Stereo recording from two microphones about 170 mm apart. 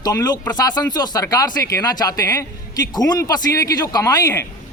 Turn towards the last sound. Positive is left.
turn(degrees=20)  # may be behind; listen again after turning